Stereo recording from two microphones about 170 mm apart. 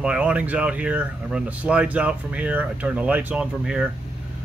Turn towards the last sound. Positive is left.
turn(degrees=-5)  # may be behind; listen again after turning